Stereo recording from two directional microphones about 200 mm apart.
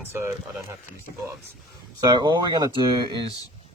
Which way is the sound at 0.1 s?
15° right (ahead or behind).